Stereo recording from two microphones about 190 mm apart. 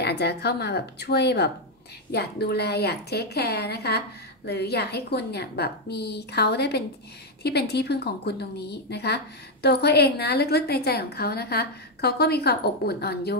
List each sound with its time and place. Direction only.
0.0 s a woman's voice: 60° left (ahead or behind)